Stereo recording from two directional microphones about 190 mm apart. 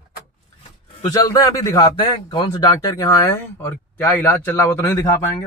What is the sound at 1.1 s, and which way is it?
A man's voice, 20° left (ahead or behind).